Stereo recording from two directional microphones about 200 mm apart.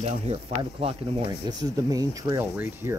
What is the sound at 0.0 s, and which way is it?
Speech, 30° right (ahead or behind).